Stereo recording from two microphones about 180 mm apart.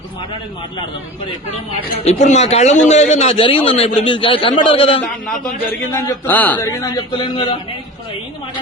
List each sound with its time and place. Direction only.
2.0 s a man's voice: 40° left (ahead or behind)
6.0 s a man's voice: 10° left (ahead or behind)
6.9 s speech: 30° left (ahead or behind)